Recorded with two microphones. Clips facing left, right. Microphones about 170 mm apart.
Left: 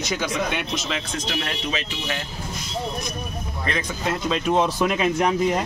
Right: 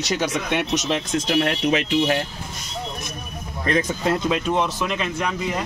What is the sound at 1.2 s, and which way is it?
Speech, 60° right (ahead or behind).